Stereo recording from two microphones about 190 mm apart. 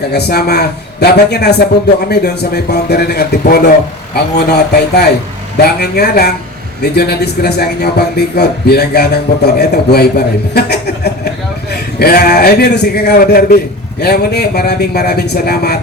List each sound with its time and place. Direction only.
0.1 s speech: 55° left (ahead or behind)